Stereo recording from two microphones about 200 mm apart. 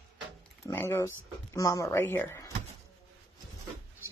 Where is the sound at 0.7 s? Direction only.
15° left (ahead or behind).